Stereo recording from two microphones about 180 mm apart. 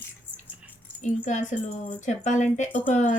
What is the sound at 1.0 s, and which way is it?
Speech, 45° left (ahead or behind).